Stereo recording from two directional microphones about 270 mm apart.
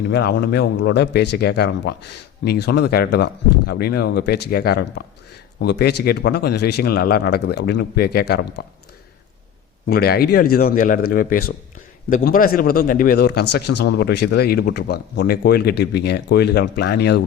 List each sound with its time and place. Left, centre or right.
0.1 s a man's voice: left
9.8 s a man's voice: left